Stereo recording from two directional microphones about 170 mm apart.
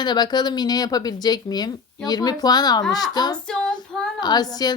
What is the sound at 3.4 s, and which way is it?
Female singing, 5° left (ahead or behind).